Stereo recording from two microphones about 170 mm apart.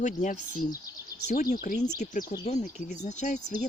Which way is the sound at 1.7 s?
55° left (ahead or behind).